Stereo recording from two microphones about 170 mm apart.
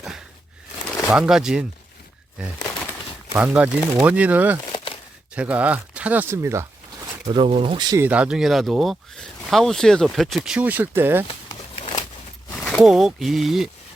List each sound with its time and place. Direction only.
1.1 s speech: 5° right (ahead or behind)
2.6 s bird: 20° left (ahead or behind)
3.3 s speech: 10° right (ahead or behind)
7.3 s speech: 30° right (ahead or behind)
8.0 s speech: 5° right (ahead or behind)
11.8 s a sound: 35° left (ahead or behind)
12.5 s speech: 5° left (ahead or behind)